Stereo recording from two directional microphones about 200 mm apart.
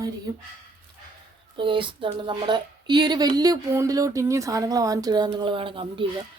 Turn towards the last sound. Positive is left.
turn(degrees=-25)  # may be behind; listen again after turning